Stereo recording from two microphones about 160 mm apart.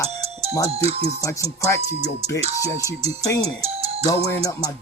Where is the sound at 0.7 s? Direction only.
40° right (ahead or behind).